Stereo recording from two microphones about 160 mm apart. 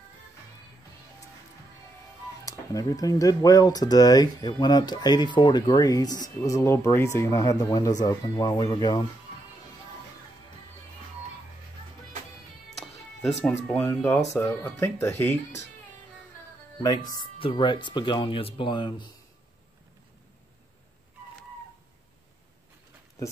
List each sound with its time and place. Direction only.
2.4 s speech: 20° left (ahead or behind)
13.7 s speech: 15° left (ahead or behind)
16.8 s speech: 25° left (ahead or behind)